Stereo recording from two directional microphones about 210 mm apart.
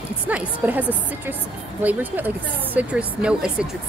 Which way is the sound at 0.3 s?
5° right (ahead or behind).